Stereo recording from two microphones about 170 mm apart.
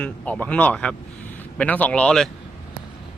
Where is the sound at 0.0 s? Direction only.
10° left (ahead or behind).